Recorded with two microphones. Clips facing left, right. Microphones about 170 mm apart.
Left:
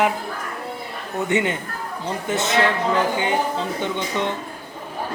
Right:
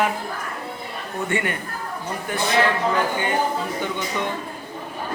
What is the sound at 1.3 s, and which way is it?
A man's voice, 20° left (ahead or behind).